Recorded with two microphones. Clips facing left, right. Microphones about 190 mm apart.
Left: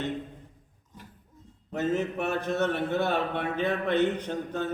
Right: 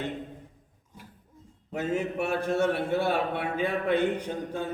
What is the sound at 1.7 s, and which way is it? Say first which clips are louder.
A man's voice: left 1 dB; 10° right (ahead or behind).